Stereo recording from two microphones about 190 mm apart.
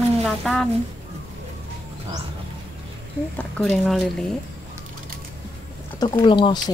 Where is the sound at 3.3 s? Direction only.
5° left (ahead or behind).